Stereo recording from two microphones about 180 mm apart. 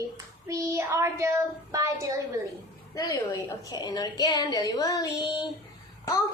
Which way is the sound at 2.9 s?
20° left (ahead or behind).